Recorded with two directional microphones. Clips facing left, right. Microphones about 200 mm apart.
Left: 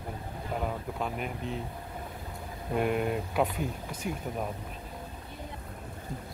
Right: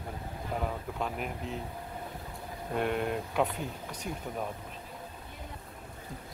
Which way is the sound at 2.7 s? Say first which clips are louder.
Left 2 dB; 5° left (ahead or behind).